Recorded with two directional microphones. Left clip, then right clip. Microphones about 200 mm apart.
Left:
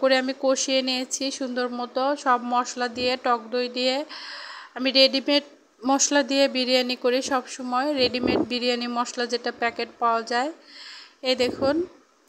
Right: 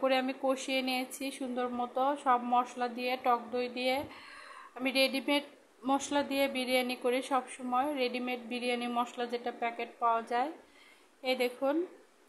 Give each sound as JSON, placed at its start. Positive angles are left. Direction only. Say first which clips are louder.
{"t": 0.0, "sound": "speech", "louder": "left 9 dB", "side_deg": 25}